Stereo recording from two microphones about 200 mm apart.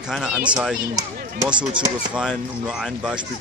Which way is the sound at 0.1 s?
5° right (ahead or behind).